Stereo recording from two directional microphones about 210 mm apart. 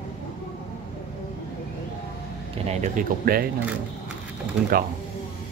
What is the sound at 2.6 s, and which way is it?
Speech, 35° right (ahead or behind).